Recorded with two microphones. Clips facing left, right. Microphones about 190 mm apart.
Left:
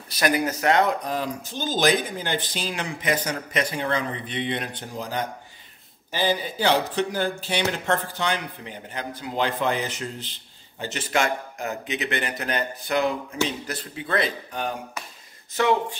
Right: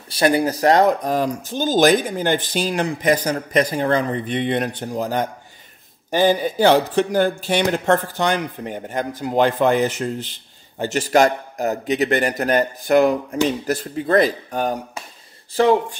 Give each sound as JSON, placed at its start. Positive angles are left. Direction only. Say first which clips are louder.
{"t": 0.1, "sound": "a man's voice", "louder": "right 6 dB", "side_deg": -30}